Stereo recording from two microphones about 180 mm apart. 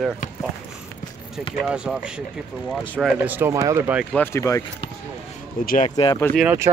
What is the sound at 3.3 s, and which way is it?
Speech, 15° right (ahead or behind).